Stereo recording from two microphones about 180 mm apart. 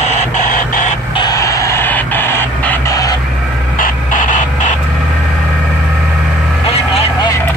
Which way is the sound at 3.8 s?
45° left (ahead or behind).